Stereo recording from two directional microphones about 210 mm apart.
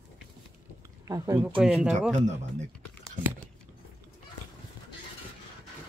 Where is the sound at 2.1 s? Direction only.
35° right (ahead or behind).